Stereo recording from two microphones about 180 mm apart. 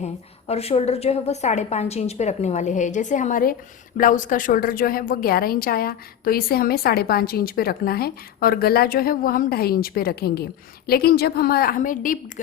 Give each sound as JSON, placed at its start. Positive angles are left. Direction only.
{"t": 0.0, "sound": "a woman's voice", "side_deg": 35}